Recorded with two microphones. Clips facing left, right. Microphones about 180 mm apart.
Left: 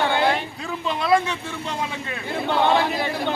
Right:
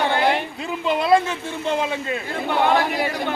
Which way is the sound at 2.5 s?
10° right (ahead or behind).